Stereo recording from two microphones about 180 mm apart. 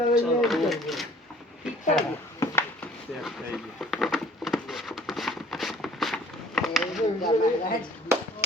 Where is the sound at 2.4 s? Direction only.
15° left (ahead or behind).